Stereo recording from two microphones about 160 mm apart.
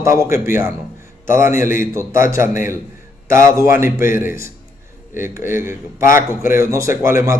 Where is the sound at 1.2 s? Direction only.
55° left (ahead or behind).